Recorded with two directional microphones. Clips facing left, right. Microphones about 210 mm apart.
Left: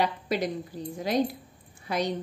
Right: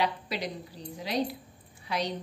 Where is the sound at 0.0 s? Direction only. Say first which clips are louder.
Left 4 dB; 50° left (ahead or behind).